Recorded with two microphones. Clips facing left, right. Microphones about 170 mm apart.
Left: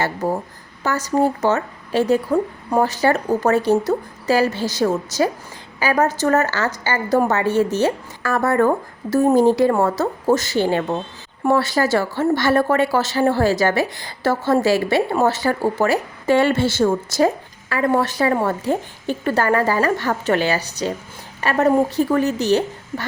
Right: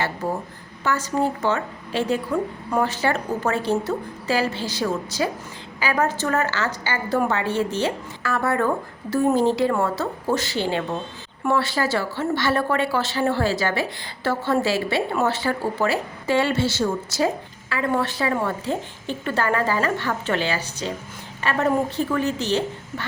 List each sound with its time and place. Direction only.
0.2 s a woman's voice: 40° left (ahead or behind)